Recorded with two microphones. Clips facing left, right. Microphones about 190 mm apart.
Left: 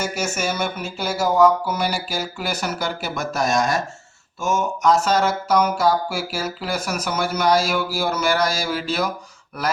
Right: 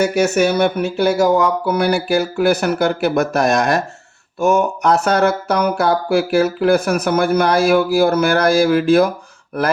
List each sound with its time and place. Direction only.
0.0 s speech: 65° right (ahead or behind)